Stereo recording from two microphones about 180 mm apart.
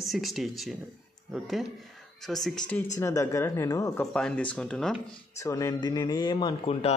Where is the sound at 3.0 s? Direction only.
15° left (ahead or behind).